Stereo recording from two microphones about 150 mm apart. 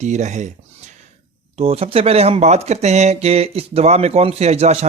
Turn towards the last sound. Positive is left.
turn(degrees=-45)  # may be behind; listen again after turning